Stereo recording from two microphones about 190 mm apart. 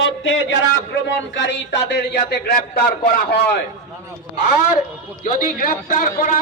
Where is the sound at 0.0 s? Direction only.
75° left (ahead or behind).